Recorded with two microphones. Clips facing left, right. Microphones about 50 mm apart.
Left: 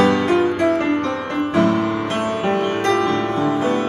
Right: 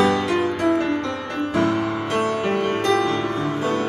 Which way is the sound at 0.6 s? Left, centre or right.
Left.